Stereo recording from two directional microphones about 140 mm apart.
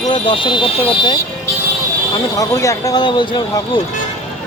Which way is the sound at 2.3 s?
25° left (ahead or behind).